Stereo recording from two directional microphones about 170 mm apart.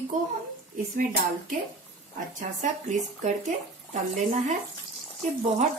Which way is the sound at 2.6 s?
45° right (ahead or behind).